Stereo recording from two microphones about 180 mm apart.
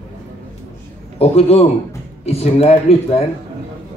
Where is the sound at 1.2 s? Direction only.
35° left (ahead or behind).